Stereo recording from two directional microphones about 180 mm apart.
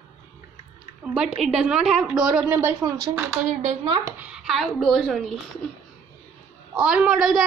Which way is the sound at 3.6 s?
40° right (ahead or behind).